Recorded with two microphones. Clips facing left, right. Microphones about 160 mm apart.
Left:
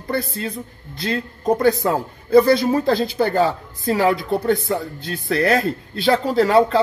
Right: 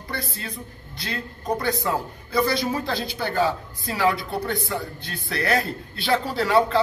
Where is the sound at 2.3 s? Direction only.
50° left (ahead or behind).